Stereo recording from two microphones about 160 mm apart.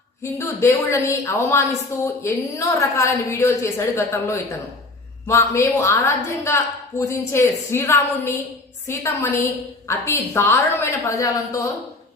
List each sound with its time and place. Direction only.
0.2 s a woman's voice: 15° left (ahead or behind)